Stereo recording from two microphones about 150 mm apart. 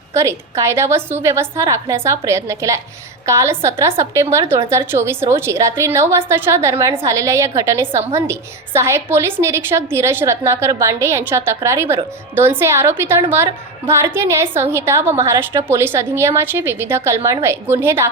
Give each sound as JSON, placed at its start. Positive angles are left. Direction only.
{"t": 0.1, "sound": "a woman's voice", "side_deg": -20}